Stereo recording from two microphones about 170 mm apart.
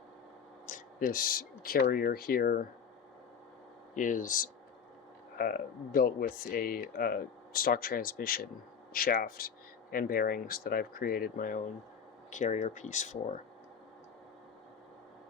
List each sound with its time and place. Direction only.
0.7 s speech: 55° left (ahead or behind)
3.9 s speech: 50° left (ahead or behind)